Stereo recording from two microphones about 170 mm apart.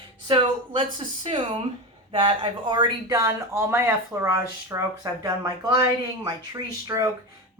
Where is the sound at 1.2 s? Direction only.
35° right (ahead or behind).